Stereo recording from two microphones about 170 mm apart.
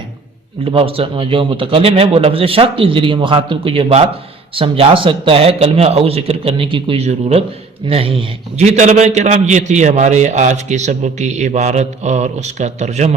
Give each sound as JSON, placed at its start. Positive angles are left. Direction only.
{"t": 0.6, "sound": "a man's voice", "side_deg": -35}